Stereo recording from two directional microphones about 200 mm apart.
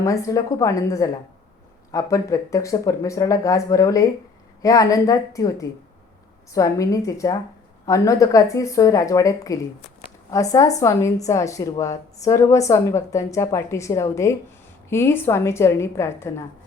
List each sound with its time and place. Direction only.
0.0 s a woman's voice: 15° left (ahead or behind)